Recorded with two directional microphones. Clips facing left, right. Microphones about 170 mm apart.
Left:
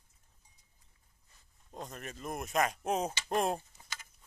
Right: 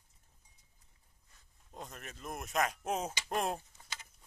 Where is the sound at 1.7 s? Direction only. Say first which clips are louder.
Left 4 dB; centre (ahead or behind).